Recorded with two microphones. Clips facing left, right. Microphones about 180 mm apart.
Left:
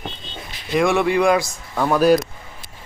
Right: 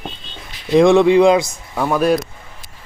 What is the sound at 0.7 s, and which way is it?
Speech, 25° right (ahead or behind).